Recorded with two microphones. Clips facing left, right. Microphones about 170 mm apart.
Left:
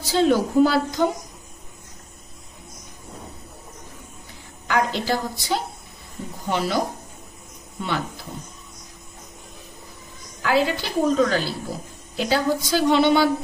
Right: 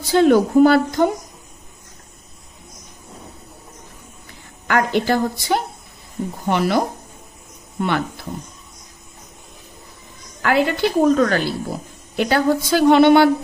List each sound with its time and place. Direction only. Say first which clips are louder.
0.0 s a woman's voice: right 5 dB; 55° right (ahead or behind)
4.6 s a woman's voice: right 4 dB; 60° right (ahead or behind)
7.8 s a woman's voice: right 6 dB; 60° right (ahead or behind)
10.4 s a woman's voice: right 4 dB; 60° right (ahead or behind)